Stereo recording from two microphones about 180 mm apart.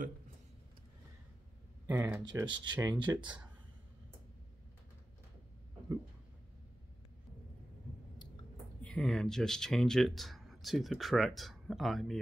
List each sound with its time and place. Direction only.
1.9 s speech: 15° right (ahead or behind)
2.3 s speech: 25° right (ahead or behind)
8.8 s speech: 5° left (ahead or behind)